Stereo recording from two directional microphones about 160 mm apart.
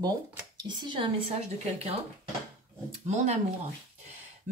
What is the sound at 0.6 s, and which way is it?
Speech, 30° right (ahead or behind).